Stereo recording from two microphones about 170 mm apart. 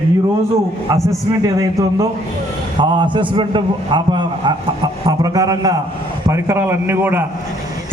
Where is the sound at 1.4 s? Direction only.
20° right (ahead or behind).